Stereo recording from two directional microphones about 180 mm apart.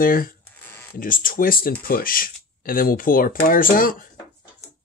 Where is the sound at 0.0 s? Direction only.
50° left (ahead or behind).